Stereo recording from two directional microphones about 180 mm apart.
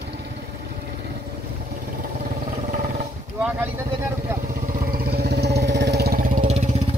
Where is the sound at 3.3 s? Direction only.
10° right (ahead or behind).